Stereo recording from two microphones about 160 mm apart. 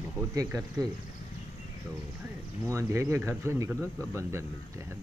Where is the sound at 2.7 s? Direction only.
20° right (ahead or behind).